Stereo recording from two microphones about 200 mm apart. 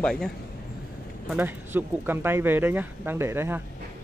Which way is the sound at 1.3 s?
10° right (ahead or behind).